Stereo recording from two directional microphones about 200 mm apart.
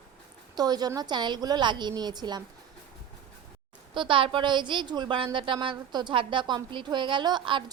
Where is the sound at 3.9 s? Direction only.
25° right (ahead or behind).